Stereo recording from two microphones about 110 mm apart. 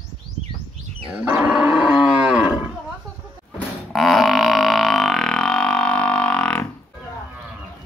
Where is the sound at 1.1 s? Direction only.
15° right (ahead or behind).